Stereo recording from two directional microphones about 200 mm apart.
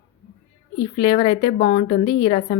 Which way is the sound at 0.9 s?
25° left (ahead or behind).